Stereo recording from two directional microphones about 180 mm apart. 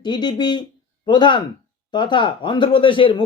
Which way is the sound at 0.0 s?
25° left (ahead or behind).